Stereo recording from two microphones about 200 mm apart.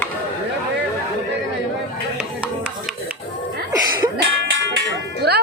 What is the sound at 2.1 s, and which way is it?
Music, centre (ahead or behind).